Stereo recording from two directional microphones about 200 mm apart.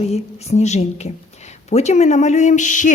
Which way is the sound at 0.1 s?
35° left (ahead or behind).